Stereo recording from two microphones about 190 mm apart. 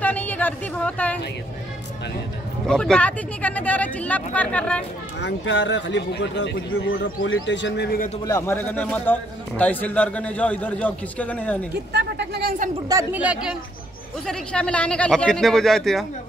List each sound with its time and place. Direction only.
0.0 s a man's voice: 10° left (ahead or behind)
2.6 s a man's voice: 5° left (ahead or behind)
5.2 s a man's voice: 75° left (ahead or behind); by 8.1 s 55° left (ahead or behind)
8.3 s a man's voice: 15° left (ahead or behind)
11.9 s speech: 60° right (ahead or behind)
12.8 s a woman's voice: 20° right (ahead or behind)
13.2 s speech: 5° right (ahead or behind)
14.2 s speech: 5° left (ahead or behind)